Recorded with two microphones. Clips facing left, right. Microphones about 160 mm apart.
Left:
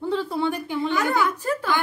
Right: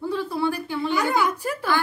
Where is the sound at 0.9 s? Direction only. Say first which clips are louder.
Right 1 dB; 15° right (ahead or behind).